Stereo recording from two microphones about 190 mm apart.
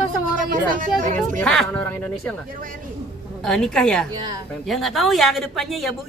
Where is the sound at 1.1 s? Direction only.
5° left (ahead or behind).